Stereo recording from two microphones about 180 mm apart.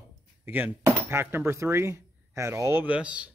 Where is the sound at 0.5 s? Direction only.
10° right (ahead or behind).